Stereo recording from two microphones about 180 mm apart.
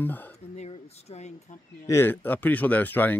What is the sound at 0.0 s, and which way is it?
Speech, 10° left (ahead or behind).